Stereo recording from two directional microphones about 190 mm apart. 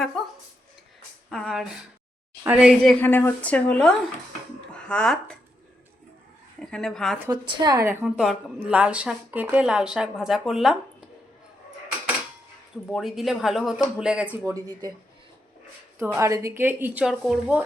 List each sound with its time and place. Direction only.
0.2 s a sound: centre (ahead or behind)
1.3 s speech: centre (ahead or behind)
3.0 s speech: 10° left (ahead or behind)
6.7 s a woman's voice: 5° left (ahead or behind)
7.2 s a woman's voice: 20° right (ahead or behind)
8.0 s a woman's voice: 5° right (ahead or behind)
12.9 s a woman's voice: centre (ahead or behind)
14.4 s a woman's voice: 20° right (ahead or behind)
16.0 s speech: 15° right (ahead or behind)